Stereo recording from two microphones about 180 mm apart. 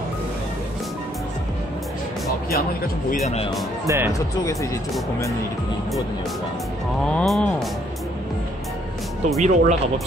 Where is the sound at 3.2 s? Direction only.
35° left (ahead or behind).